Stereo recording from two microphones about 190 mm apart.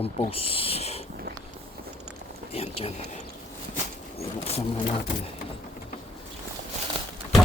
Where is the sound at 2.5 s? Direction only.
30° left (ahead or behind).